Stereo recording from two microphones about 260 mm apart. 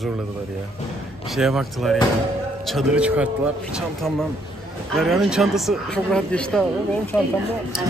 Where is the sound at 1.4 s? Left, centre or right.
Centre.